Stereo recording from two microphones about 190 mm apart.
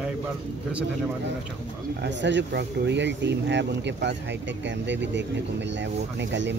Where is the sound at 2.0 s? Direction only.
70° right (ahead or behind).